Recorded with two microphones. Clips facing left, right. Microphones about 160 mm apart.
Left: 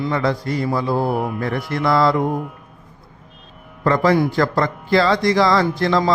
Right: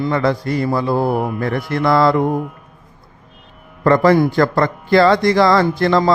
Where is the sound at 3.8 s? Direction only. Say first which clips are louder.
Right 4 dB; 55° right (ahead or behind).